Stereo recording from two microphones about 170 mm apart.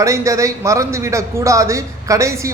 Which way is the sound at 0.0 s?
20° right (ahead or behind).